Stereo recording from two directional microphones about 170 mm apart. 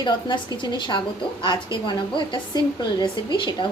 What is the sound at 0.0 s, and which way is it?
A woman's voice, 25° left (ahead or behind).